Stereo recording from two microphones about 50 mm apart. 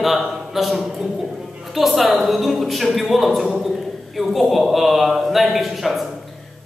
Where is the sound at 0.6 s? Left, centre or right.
Centre.